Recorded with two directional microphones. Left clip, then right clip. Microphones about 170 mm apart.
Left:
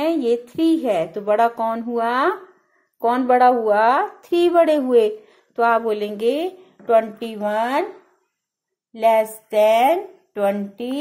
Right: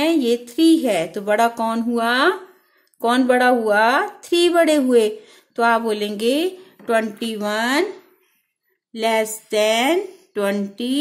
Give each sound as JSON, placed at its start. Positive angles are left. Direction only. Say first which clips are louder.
{"t": 0.0, "sound": "a woman's voice", "louder": "right 1 dB", "side_deg": -15}
{"t": 8.9, "sound": "a woman's voice", "louder": "left 3 dB", "side_deg": -20}